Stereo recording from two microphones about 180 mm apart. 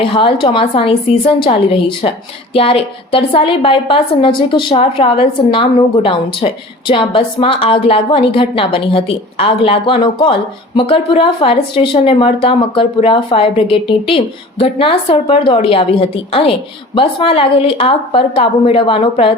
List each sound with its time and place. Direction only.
0.0 s a woman's voice: 30° left (ahead or behind)